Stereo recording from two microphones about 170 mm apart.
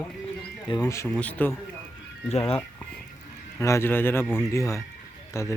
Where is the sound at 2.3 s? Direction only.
35° left (ahead or behind).